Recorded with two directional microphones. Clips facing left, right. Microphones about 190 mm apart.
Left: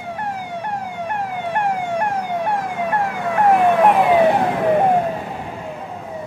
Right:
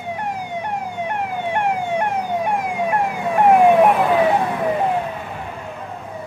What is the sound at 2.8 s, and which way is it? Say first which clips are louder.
Emergency vehicle: even; 20° right (ahead or behind).